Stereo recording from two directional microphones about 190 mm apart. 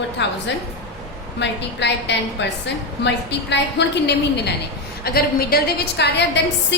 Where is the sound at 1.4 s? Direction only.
65° left (ahead or behind).